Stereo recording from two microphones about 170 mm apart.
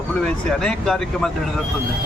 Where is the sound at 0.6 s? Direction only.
5° left (ahead or behind).